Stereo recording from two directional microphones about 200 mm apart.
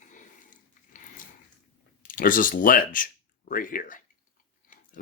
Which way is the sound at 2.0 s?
45° left (ahead or behind).